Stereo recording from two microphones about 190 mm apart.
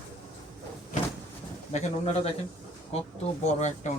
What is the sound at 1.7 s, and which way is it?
Speech, 35° left (ahead or behind).